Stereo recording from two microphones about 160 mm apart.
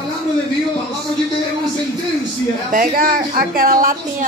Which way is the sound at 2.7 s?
60° right (ahead or behind).